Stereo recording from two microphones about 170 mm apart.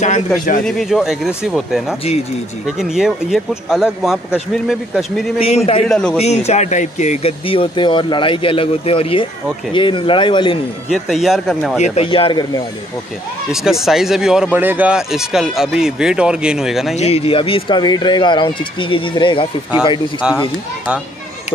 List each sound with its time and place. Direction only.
0.7 s speech: centre (ahead or behind)
6.1 s speech: 40° left (ahead or behind)
10.9 s speech: centre (ahead or behind)
11.8 s speech: 35° left (ahead or behind)
13.5 s speech: centre (ahead or behind)
16.9 s speech: 40° left (ahead or behind)
20.2 s speech: 5° right (ahead or behind)